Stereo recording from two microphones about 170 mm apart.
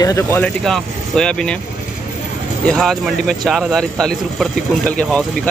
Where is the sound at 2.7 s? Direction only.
Centre (ahead or behind).